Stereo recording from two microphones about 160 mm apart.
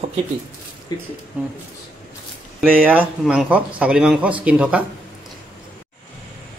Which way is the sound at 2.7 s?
10° right (ahead or behind).